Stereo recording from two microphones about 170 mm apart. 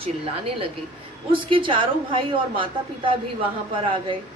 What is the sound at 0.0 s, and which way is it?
A woman's voice, 35° right (ahead or behind).